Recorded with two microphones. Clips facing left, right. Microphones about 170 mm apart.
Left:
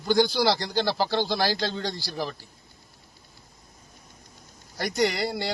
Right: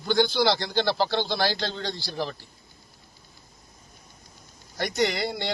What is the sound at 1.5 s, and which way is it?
Speech, 40° left (ahead or behind).